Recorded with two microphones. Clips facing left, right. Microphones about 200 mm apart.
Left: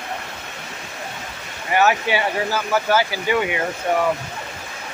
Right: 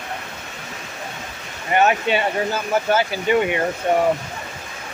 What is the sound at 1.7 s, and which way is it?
Speech, 25° right (ahead or behind).